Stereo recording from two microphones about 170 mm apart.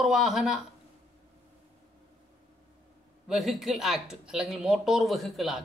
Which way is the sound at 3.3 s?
Centre (ahead or behind).